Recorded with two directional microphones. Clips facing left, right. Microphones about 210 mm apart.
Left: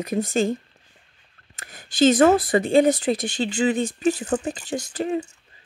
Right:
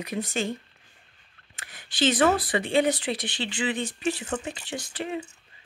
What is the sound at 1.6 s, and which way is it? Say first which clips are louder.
Speech: left 8 dB; 45° left (ahead or behind).